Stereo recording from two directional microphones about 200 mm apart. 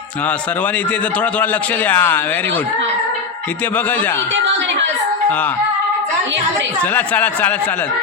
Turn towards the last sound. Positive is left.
turn(degrees=10)  # may be behind; listen again after turning